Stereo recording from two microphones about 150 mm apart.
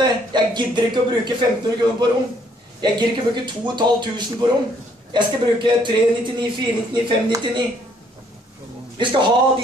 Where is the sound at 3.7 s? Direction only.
30° right (ahead or behind).